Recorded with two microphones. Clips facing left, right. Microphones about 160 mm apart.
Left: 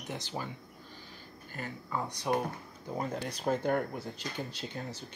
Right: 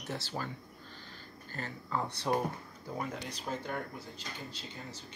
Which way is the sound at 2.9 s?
30° left (ahead or behind).